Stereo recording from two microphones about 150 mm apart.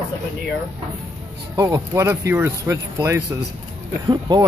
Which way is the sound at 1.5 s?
20° right (ahead or behind).